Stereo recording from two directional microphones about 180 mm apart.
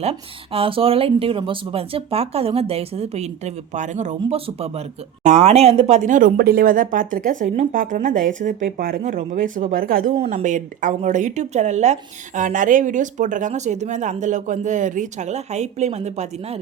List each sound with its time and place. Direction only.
0.0 s speech: 35° right (ahead or behind)